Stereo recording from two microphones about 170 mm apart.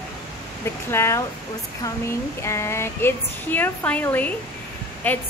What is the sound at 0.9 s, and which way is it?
A woman's voice, 15° left (ahead or behind).